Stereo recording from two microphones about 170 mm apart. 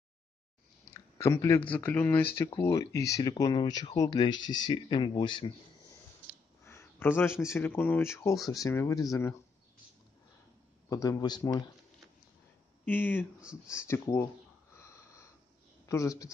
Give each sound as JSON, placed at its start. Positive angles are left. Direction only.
{"t": 0.9, "sound": "speech", "side_deg": 15}
{"t": 2.5, "sound": "speech", "side_deg": 20}
{"t": 6.6, "sound": "a sound", "side_deg": 15}
{"t": 7.5, "sound": "speech", "side_deg": 10}
{"t": 10.9, "sound": "speech", "side_deg": 20}
{"t": 12.8, "sound": "speech", "side_deg": 10}
{"t": 15.8, "sound": "speech", "side_deg": 20}